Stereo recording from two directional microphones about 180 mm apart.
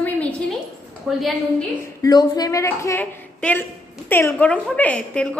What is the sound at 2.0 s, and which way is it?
A woman's voice, 20° left (ahead or behind).